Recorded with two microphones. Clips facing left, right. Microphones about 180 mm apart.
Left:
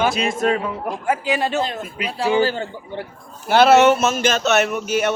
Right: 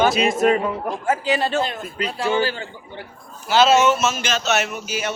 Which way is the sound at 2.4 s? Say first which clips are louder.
Left 4 dB; 45° left (ahead or behind).